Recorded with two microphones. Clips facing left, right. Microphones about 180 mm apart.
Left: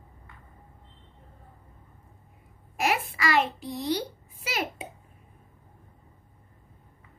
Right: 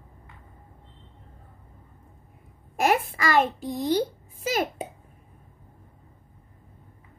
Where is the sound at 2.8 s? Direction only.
50° right (ahead or behind).